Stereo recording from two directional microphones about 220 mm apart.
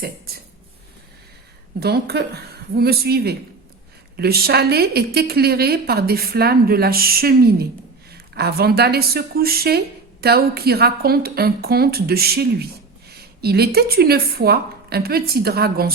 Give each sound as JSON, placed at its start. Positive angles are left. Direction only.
{"t": 1.8, "sound": "a woman's voice", "side_deg": -45}